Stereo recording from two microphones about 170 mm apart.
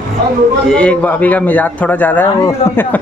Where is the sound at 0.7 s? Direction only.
5° left (ahead or behind).